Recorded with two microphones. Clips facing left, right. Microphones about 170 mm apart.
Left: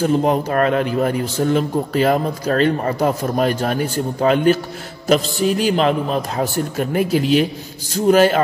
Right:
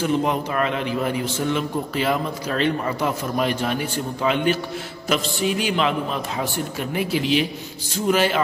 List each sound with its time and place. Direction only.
0.0 s a man's voice: 40° left (ahead or behind)